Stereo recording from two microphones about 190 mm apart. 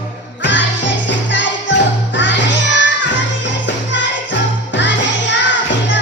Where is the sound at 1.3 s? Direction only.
75° left (ahead or behind).